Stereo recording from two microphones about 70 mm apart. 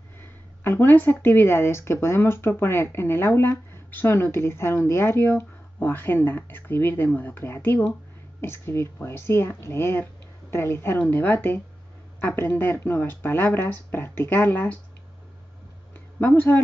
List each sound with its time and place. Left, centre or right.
0.2 s speech: left
16.2 s speech: left